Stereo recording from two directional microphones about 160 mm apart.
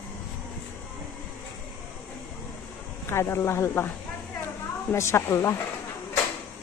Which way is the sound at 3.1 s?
15° left (ahead or behind).